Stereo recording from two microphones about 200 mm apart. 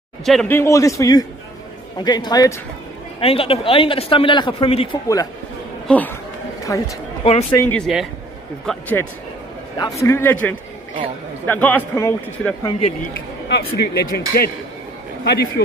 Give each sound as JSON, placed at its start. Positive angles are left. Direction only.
{"t": 0.2, "sound": "a man's voice", "side_deg": 0}
{"t": 5.0, "sound": "a man's voice", "side_deg": 15}
{"t": 13.1, "sound": "speech", "side_deg": 50}